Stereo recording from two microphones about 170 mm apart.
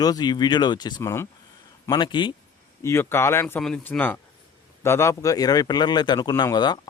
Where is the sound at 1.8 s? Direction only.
25° left (ahead or behind).